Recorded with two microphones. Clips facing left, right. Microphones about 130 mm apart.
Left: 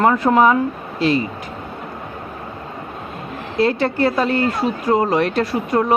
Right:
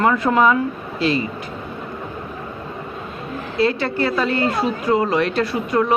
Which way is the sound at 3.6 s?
45° left (ahead or behind).